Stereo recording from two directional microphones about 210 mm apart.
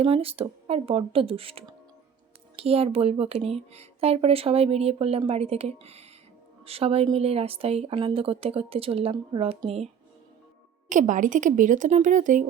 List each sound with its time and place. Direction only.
0.0 s speech: 25° right (ahead or behind)